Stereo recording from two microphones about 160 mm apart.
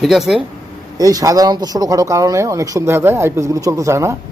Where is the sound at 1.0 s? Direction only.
20° right (ahead or behind).